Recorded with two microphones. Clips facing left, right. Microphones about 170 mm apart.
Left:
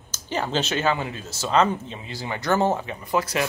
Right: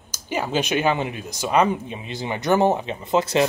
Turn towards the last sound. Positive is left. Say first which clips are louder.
# right 5 dB
turn(degrees=-25)  # may be behind; listen again after turning